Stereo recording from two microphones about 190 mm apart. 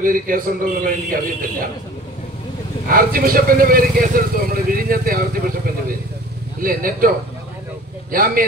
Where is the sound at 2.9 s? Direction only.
50° right (ahead or behind).